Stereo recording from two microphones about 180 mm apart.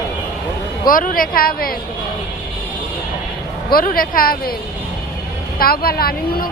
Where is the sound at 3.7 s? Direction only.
50° left (ahead or behind).